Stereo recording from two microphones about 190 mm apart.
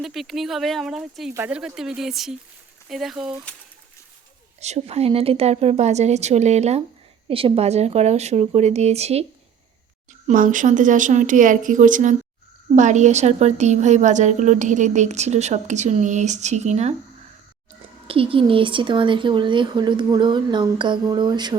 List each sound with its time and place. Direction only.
0.0 s speech: centre (ahead or behind)
4.6 s a woman's voice: 35° right (ahead or behind)
10.2 s a woman's voice: 45° right (ahead or behind)
18.1 s speech: 30° right (ahead or behind)